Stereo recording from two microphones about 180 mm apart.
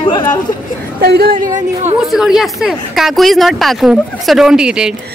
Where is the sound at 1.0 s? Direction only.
55° right (ahead or behind).